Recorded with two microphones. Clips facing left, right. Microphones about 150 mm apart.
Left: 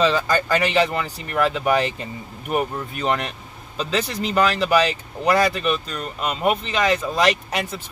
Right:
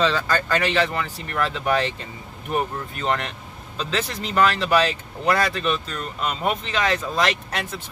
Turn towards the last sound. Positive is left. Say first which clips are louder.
# left 3 dB
turn(degrees=10)  # may be behind; listen again after turning